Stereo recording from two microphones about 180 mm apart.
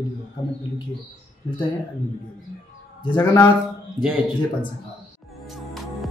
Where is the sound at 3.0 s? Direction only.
25° left (ahead or behind).